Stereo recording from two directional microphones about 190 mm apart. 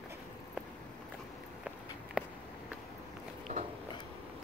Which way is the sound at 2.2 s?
5° right (ahead or behind).